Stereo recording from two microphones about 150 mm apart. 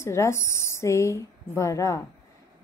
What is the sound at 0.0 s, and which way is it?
A woman's voice, 20° left (ahead or behind).